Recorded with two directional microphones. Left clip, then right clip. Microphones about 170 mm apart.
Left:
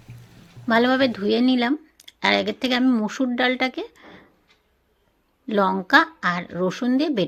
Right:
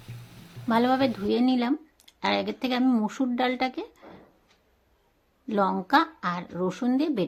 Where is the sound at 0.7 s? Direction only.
15° left (ahead or behind).